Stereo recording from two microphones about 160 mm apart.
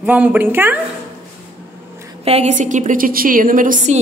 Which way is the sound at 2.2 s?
40° right (ahead or behind).